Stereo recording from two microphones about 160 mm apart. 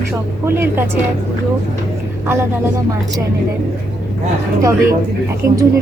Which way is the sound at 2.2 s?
15° right (ahead or behind).